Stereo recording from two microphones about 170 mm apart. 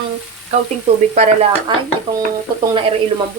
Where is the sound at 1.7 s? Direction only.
30° right (ahead or behind).